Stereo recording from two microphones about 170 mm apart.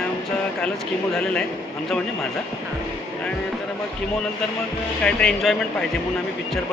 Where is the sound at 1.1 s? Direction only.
5° left (ahead or behind).